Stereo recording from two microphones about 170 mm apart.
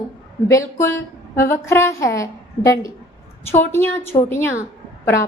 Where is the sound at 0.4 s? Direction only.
15° left (ahead or behind).